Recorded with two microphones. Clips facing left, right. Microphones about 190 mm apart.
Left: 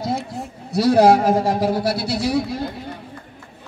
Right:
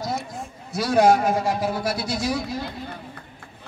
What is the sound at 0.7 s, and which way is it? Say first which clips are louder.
A man's voice: left 4 dB; 35° left (ahead or behind).